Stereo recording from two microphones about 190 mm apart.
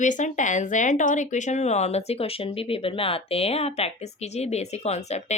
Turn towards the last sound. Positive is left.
turn(degrees=35)  # may be behind; listen again after turning